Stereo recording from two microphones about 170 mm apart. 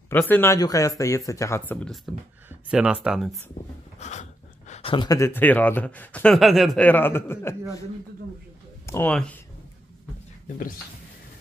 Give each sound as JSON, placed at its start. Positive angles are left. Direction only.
{"t": 0.1, "sound": "speech", "side_deg": 10}
{"t": 2.7, "sound": "speech", "side_deg": -5}
{"t": 4.0, "sound": "a sound", "side_deg": 45}
{"t": 4.9, "sound": "speech", "side_deg": 20}
{"t": 8.8, "sound": "speech", "side_deg": 15}